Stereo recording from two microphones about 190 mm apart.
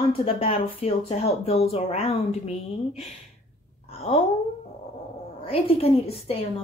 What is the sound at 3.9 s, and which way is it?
Cat, 30° left (ahead or behind).